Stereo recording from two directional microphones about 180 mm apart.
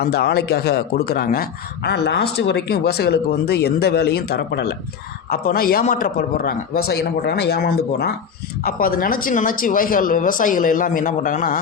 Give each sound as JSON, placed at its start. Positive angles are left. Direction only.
{"t": 0.0, "sound": "speech", "side_deg": 60}